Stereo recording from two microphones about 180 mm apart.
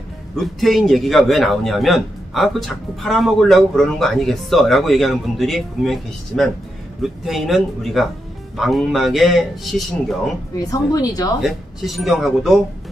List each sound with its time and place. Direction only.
0.4 s a man's voice: centre (ahead or behind)
10.6 s speech: 20° left (ahead or behind)
11.4 s a man's voice: centre (ahead or behind)